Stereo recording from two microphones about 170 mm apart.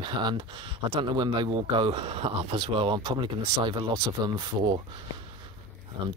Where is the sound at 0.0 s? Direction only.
25° right (ahead or behind).